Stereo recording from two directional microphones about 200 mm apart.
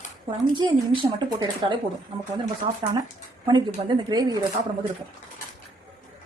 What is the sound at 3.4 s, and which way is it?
Speech, 20° right (ahead or behind).